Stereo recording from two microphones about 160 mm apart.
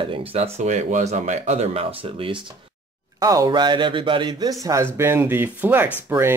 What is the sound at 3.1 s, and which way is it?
Speech, 20° right (ahead or behind).